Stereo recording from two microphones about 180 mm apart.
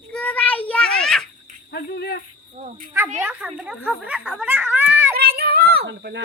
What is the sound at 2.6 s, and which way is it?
Insect, 45° right (ahead or behind).